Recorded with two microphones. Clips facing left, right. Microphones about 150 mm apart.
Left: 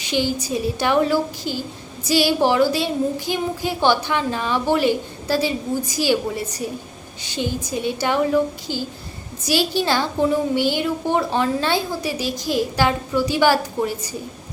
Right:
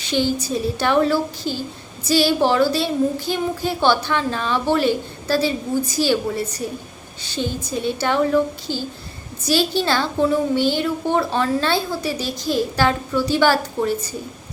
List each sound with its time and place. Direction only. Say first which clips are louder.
0.0 s a woman's voice: right 1 dB; 15° left (ahead or behind)